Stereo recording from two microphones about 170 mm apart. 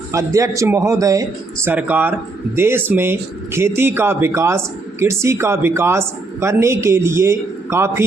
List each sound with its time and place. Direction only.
0.1 s speech: 20° right (ahead or behind)